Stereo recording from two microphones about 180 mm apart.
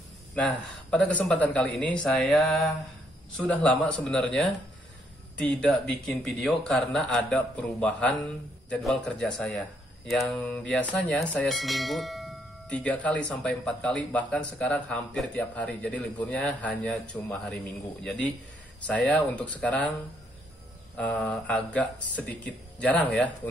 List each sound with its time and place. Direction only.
0.3 s speech: centre (ahead or behind)
20.9 s speech: 5° left (ahead or behind)